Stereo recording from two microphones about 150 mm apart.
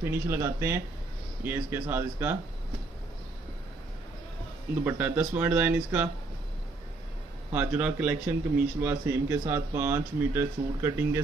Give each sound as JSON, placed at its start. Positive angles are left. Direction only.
{"t": 0.0, "sound": "speech", "side_deg": -15}
{"t": 4.8, "sound": "speech", "side_deg": -10}
{"t": 7.5, "sound": "speech", "side_deg": -10}